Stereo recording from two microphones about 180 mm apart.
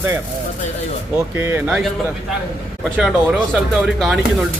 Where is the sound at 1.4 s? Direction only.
10° right (ahead or behind).